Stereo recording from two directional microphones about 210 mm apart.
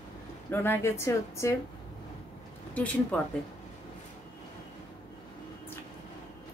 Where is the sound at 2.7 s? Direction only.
5° left (ahead or behind).